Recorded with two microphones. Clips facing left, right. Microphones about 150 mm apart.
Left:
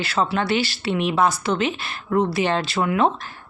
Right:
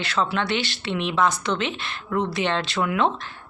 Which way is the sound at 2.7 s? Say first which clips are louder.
Left 3 dB; 40° left (ahead or behind).